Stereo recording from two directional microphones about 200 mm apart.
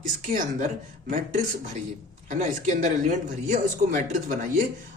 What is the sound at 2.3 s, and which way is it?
Speech, 40° right (ahead or behind).